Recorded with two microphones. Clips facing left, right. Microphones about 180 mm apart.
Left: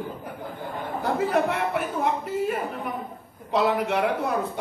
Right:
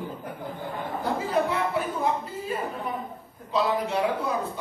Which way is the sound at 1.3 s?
65° left (ahead or behind).